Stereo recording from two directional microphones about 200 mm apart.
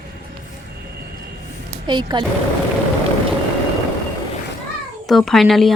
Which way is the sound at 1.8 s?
20° right (ahead or behind).